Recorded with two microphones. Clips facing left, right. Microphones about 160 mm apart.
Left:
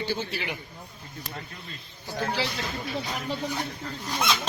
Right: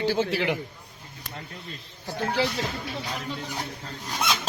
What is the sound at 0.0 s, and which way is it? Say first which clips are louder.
Speech: right 7 dB; 90° right.